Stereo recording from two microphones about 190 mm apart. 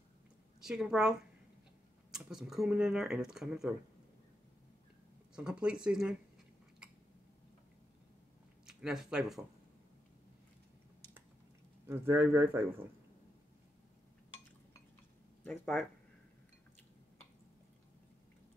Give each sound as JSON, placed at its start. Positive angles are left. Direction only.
{"t": 0.6, "sound": "a woman's voice", "side_deg": -5}
{"t": 5.3, "sound": "speech", "side_deg": -5}
{"t": 8.6, "sound": "speech", "side_deg": 0}
{"t": 11.8, "sound": "a man's voice", "side_deg": -10}
{"t": 15.4, "sound": "speech", "side_deg": 5}